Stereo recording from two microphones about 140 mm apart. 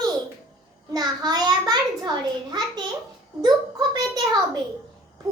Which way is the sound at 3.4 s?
30° right (ahead or behind).